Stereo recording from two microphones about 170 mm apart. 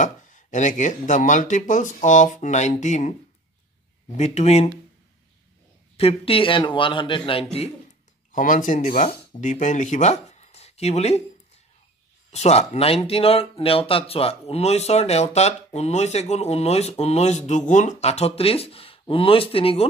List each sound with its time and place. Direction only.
0.0 s speech: 45° left (ahead or behind)
5.9 s speech: 35° left (ahead or behind)
8.3 s speech: 50° left (ahead or behind); by 19.9 s 35° left (ahead or behind)